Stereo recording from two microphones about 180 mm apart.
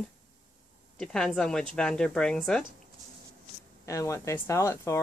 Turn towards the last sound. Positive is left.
turn(degrees=15)  # may be behind; listen again after turning